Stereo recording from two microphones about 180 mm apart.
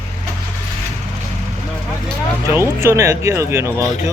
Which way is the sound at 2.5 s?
15° right (ahead or behind).